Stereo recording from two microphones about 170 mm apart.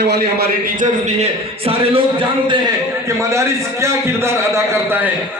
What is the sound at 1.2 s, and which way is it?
Speech, 35° right (ahead or behind).